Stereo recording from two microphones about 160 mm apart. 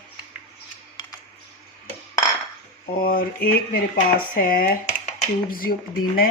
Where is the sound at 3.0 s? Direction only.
65° left (ahead or behind).